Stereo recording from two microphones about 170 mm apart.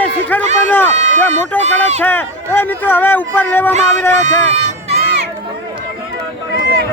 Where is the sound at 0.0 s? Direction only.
10° left (ahead or behind).